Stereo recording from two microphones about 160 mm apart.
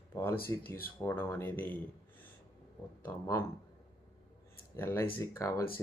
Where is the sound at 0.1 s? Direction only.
15° left (ahead or behind).